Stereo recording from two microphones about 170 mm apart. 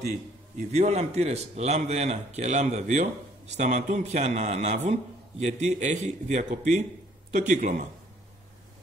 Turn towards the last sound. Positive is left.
turn(degrees=-50)  # may be behind; listen again after turning